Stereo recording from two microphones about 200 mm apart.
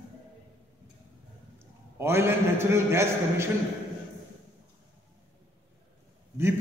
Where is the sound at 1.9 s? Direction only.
10° right (ahead or behind).